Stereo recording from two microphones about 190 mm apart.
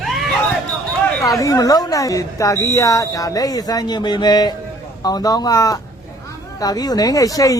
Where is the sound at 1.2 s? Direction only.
15° left (ahead or behind).